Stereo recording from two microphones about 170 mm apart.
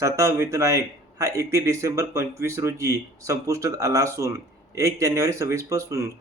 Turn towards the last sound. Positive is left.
turn(degrees=-15)  # may be behind; listen again after turning